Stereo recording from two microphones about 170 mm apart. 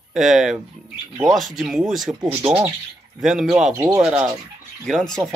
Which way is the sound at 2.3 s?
15° right (ahead or behind).